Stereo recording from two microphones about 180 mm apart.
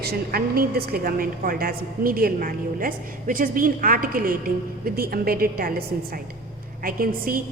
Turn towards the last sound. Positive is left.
turn(degrees=-55)  # may be behind; listen again after turning